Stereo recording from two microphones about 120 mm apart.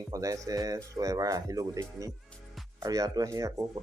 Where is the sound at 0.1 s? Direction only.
30° right (ahead or behind).